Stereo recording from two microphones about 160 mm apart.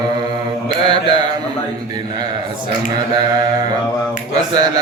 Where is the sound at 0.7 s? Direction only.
30° right (ahead or behind).